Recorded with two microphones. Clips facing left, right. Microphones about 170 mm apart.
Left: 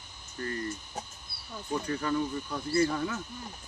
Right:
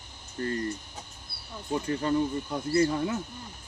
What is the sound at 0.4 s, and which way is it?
Speech, 35° right (ahead or behind).